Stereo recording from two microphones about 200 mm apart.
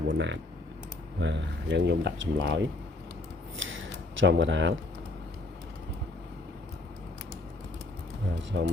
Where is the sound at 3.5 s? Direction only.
70° right (ahead or behind).